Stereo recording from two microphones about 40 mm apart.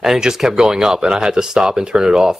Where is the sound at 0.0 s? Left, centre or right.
Centre.